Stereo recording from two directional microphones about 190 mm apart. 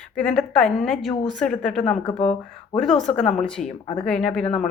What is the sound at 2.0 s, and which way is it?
Speech, 35° left (ahead or behind).